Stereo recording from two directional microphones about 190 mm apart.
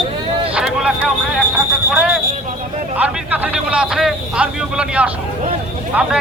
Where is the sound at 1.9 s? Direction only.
5° right (ahead or behind).